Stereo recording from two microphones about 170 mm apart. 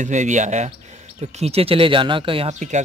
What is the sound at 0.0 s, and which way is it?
Speech, 45° right (ahead or behind).